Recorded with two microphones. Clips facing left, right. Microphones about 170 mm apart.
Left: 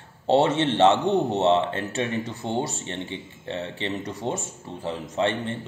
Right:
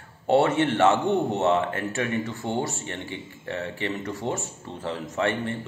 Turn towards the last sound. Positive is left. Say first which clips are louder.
# left 1 dB
turn(degrees=20)  # may be behind; listen again after turning